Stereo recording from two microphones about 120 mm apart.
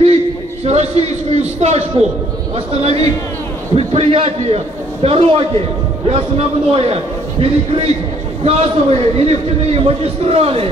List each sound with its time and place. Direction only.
0.7 s a man's voice: 60° right (ahead or behind)